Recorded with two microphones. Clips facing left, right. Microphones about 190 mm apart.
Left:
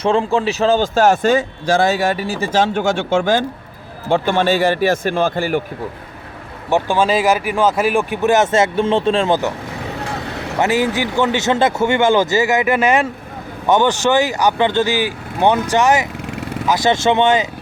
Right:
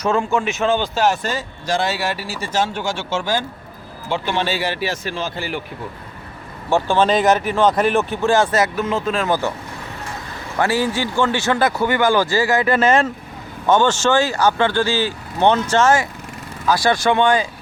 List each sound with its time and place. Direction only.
0.0 s a man's voice: 30° left (ahead or behind); by 5.6 s 45° left (ahead or behind)
6.7 s speech: 15° left (ahead or behind)
10.0 s vehicle: 75° left (ahead or behind)
10.6 s a man's voice: 20° left (ahead or behind)